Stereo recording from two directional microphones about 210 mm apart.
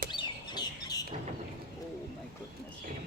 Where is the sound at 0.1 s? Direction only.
20° left (ahead or behind).